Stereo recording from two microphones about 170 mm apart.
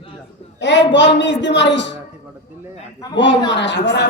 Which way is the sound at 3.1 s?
90° left.